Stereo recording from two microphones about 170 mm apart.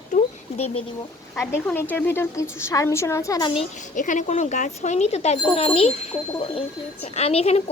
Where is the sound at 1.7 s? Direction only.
10° left (ahead or behind).